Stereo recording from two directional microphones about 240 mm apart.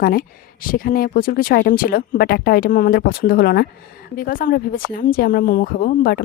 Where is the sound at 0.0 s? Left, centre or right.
Left.